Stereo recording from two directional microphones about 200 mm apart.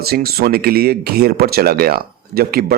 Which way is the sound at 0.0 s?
50° right (ahead or behind).